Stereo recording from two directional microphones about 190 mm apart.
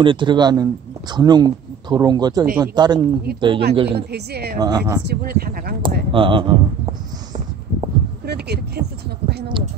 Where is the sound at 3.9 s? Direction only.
60° right (ahead or behind).